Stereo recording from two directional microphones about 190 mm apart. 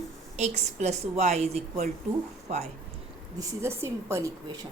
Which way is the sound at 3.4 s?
15° right (ahead or behind).